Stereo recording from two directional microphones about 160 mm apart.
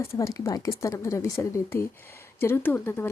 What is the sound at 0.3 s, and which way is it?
A woman's voice, 20° left (ahead or behind).